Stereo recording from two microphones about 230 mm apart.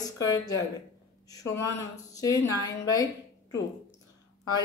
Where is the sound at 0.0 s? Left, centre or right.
Centre.